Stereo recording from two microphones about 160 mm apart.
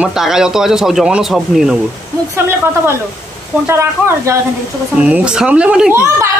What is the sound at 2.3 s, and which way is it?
Speech, 15° right (ahead or behind).